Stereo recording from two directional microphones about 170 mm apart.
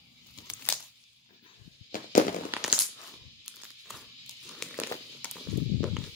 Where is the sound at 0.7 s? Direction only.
10° left (ahead or behind).